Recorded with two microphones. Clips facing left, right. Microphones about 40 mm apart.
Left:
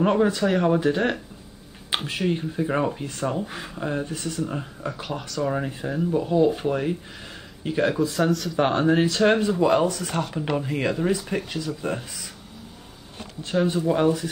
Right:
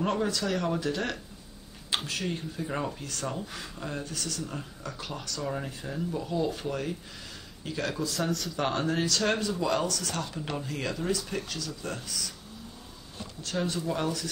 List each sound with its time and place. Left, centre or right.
0.0 s speech: left
8.2 s speech: centre
8.5 s speech: left
13.7 s speech: left